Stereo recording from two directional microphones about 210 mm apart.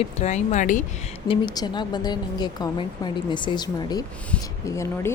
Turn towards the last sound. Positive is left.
turn(degrees=15)  # may be behind; listen again after turning